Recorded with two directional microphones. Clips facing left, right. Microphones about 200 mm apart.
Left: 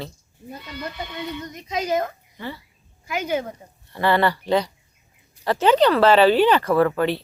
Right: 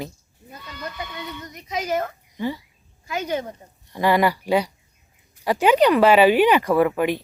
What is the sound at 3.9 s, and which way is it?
Speech, 10° right (ahead or behind).